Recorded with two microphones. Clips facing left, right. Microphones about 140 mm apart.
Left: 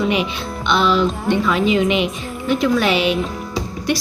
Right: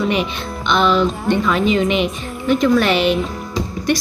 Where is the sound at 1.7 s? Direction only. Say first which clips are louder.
Even; centre (ahead or behind).